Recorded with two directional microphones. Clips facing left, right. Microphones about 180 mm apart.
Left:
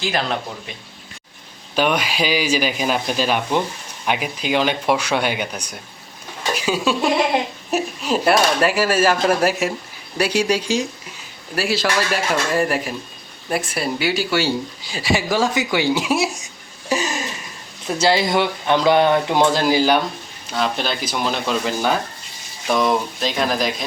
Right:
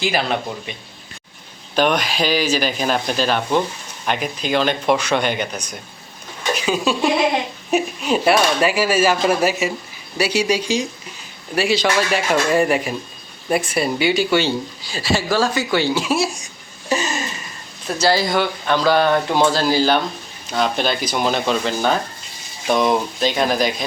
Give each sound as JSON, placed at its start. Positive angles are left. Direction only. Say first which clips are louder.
{"t": 0.0, "sound": "speech", "louder": "right 2 dB", "side_deg": -5}
{"t": 1.7, "sound": "speech", "louder": "right 1 dB", "side_deg": 10}
{"t": 11.5, "sound": "speech", "louder": "right 3 dB", "side_deg": 5}
{"t": 14.8, "sound": "speech", "louder": "even", "side_deg": 15}
{"t": 17.8, "sound": "speech", "louder": "even", "side_deg": 20}
{"t": 20.5, "sound": "speech", "louder": "right 2 dB", "side_deg": 0}